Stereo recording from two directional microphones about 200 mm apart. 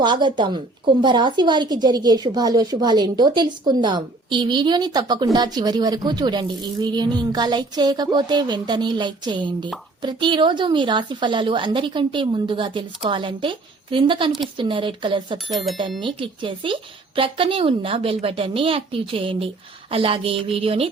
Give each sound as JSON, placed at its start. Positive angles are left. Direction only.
{"t": 0.0, "sound": "a woman's voice", "side_deg": -20}